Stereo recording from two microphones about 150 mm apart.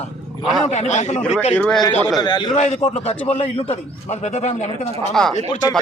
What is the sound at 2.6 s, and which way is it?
A man's voice, 50° left (ahead or behind).